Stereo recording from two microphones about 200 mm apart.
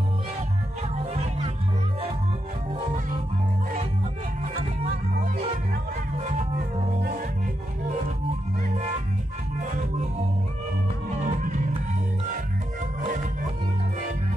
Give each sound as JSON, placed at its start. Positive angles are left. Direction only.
{"t": 4.8, "sound": "music", "side_deg": -45}
{"t": 11.1, "sound": "music", "side_deg": -40}